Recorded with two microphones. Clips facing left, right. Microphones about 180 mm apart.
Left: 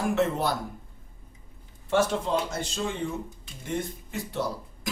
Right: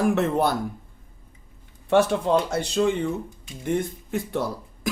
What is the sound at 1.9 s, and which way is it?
Speech, 65° right (ahead or behind).